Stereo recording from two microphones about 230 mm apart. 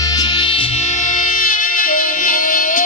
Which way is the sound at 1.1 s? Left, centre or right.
Left.